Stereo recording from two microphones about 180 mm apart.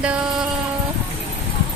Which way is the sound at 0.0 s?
5° right (ahead or behind).